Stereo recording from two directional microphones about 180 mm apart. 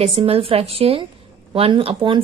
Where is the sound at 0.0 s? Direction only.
35° right (ahead or behind).